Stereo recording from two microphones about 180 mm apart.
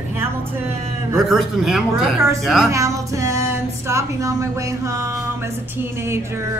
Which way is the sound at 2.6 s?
15° right (ahead or behind).